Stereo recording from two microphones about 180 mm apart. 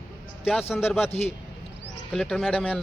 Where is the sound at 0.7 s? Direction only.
10° left (ahead or behind).